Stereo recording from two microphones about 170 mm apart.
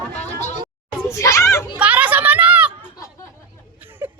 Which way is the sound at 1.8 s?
10° right (ahead or behind).